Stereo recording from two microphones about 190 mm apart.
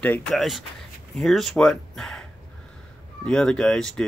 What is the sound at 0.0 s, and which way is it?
Speech, 5° left (ahead or behind).